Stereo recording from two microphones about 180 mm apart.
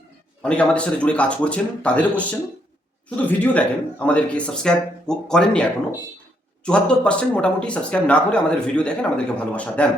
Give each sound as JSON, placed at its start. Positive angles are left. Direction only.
{"t": 0.4, "sound": "speech", "side_deg": 5}